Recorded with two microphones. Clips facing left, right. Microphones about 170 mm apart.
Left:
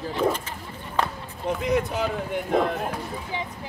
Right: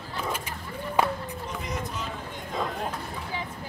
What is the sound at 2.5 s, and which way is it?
Speech, 60° left (ahead or behind).